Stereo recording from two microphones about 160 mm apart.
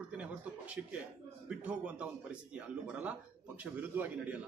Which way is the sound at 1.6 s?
10° right (ahead or behind).